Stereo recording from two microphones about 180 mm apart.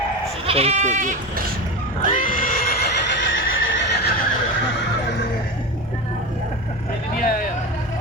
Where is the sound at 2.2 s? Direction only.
50° left (ahead or behind); by 4.1 s 90° left.